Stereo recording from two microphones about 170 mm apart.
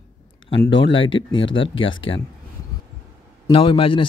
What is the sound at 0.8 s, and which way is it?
A man's voice, 30° left (ahead or behind).